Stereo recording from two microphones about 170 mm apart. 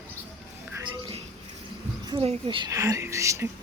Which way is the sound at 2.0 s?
30° right (ahead or behind).